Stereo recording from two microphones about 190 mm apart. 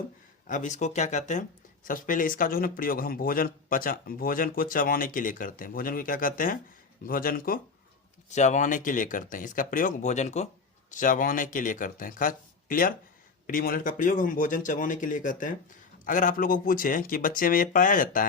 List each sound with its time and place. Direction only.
0.4 s speech: 40° left (ahead or behind)
8.3 s speech: 40° left (ahead or behind)